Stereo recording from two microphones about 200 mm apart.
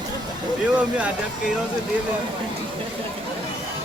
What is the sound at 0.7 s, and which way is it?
Speech, 5° right (ahead or behind).